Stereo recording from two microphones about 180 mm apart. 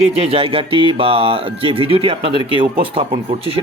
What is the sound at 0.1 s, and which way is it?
Speech, 35° right (ahead or behind).